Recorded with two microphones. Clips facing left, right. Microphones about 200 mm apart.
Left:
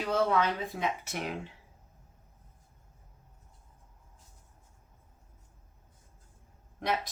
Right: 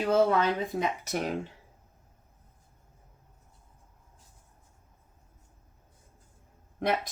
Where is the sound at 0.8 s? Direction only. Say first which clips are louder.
Right 4 dB; 40° right (ahead or behind).